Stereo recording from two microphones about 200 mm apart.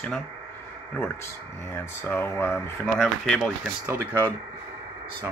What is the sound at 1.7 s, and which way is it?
Speech, 10° left (ahead or behind).